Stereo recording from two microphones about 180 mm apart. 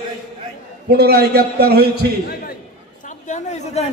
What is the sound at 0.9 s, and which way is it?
A man's voice, 60° right (ahead or behind).